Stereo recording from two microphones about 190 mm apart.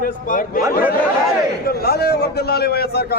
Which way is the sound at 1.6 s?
55° left (ahead or behind).